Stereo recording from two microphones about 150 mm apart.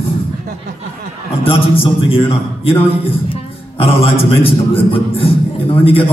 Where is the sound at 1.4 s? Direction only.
40° left (ahead or behind).